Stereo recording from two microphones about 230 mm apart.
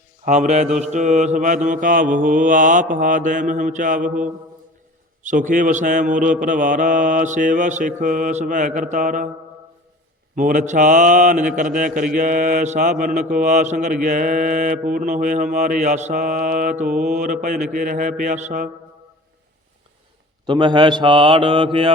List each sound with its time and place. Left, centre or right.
0.3 s mantra: right
10.3 s mantra: right
20.5 s mantra: centre